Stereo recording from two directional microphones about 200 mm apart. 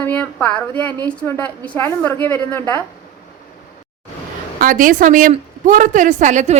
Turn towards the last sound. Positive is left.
turn(degrees=-35)  # may be behind; listen again after turning